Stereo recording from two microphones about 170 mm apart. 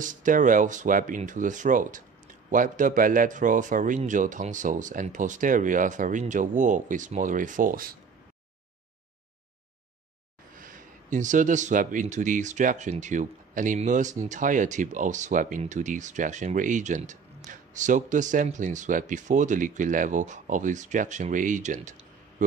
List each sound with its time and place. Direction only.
0.0 s speech: 50° right (ahead or behind)
10.5 s speech: 50° right (ahead or behind)